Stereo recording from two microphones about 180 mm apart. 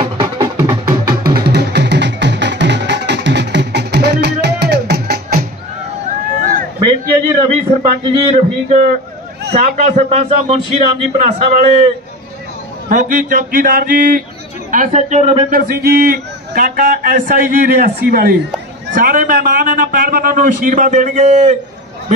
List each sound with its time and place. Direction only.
0.0 s music: 25° right (ahead or behind)
0.8 s music: 55° right (ahead or behind)
6.8 s a sound: 25° right (ahead or behind)
8.6 s a man's voice: 40° right (ahead or behind)
12.9 s a man's voice: 45° right (ahead or behind)
15.5 s a man's voice: 60° right (ahead or behind); by 21.5 s 40° right (ahead or behind)